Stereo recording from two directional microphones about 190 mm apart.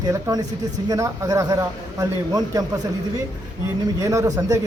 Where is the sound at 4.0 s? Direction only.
15° right (ahead or behind).